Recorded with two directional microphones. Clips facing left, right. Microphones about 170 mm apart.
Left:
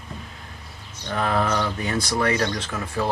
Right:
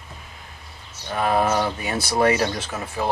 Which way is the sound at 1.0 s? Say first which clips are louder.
Right 2 dB; 20° right (ahead or behind).